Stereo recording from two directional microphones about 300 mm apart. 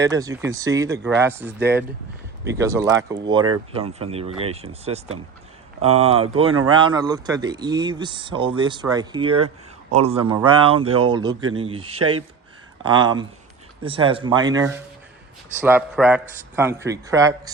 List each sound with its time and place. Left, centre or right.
0.0 s a man's voice: centre